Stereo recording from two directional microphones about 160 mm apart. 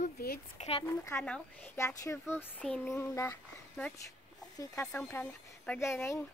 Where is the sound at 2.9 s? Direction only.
20° left (ahead or behind).